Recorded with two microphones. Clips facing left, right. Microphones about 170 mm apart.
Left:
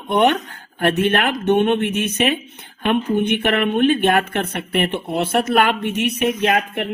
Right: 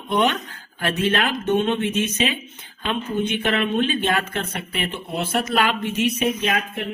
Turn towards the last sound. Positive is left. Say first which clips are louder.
# left 5 dB
turn(degrees=60)  # may be behind; listen again after turning